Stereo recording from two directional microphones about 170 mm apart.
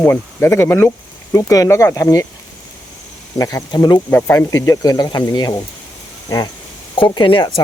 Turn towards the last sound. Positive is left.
turn(degrees=30)  # may be behind; listen again after turning